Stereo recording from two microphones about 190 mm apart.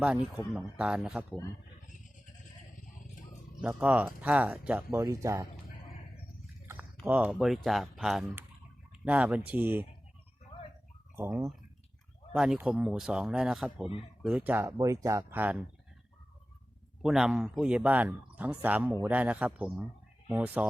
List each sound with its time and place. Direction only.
0.5 s speech: 5° right (ahead or behind)
3.6 s speech: 5° right (ahead or behind)
7.0 s speech: 5° right (ahead or behind)
11.2 s speech: 10° right (ahead or behind)
17.0 s speech: centre (ahead or behind)